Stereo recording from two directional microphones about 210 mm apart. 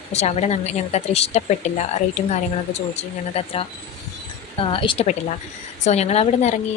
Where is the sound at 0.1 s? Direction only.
30° left (ahead or behind).